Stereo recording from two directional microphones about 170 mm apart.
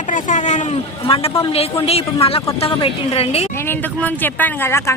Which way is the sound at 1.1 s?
35° left (ahead or behind).